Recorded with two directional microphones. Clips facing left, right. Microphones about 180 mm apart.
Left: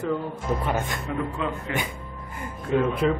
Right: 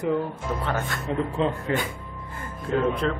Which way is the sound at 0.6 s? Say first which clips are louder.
Left 1 dB; 15° left (ahead or behind).